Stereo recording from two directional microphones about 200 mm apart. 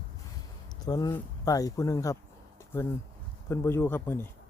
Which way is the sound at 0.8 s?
20° left (ahead or behind).